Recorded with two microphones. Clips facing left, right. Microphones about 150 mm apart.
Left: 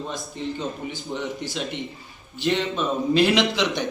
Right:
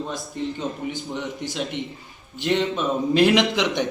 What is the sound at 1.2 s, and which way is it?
Speech, centre (ahead or behind).